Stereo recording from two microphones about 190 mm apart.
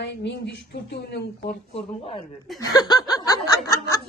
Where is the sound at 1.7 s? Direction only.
30° left (ahead or behind).